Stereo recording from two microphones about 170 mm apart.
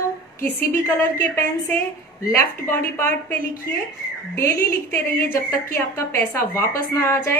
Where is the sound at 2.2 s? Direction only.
15° left (ahead or behind).